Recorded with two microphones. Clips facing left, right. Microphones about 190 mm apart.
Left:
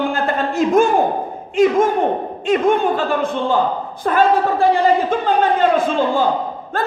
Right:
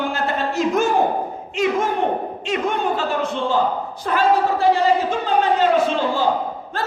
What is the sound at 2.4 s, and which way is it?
A man's voice, 50° left (ahead or behind).